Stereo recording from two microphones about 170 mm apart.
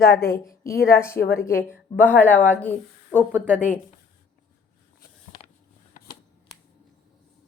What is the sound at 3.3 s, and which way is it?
Speech, 10° right (ahead or behind).